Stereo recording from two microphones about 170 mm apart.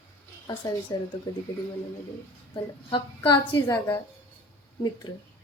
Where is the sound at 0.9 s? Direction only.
20° left (ahead or behind).